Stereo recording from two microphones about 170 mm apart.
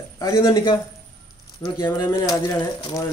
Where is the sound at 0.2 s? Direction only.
20° left (ahead or behind).